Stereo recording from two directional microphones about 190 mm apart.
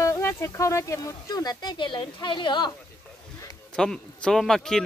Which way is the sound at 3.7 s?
5° left (ahead or behind).